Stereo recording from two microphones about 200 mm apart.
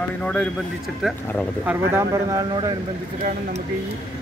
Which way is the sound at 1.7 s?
15° right (ahead or behind).